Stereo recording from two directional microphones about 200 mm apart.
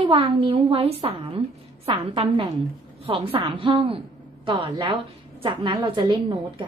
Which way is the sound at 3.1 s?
25° right (ahead or behind).